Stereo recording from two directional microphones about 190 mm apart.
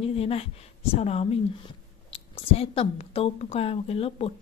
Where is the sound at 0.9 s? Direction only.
35° left (ahead or behind).